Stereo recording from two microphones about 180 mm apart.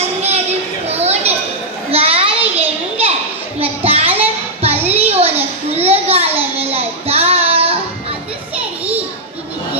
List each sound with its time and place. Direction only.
0.8 s chatter: 35° right (ahead or behind)
1.9 s children playing: 35° right (ahead or behind)
2.6 s a sound: 35° right (ahead or behind)